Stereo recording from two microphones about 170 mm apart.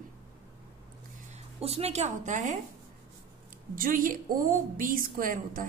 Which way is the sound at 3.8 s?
55° right (ahead or behind).